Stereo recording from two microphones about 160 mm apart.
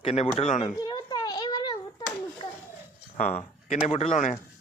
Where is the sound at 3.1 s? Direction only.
45° left (ahead or behind).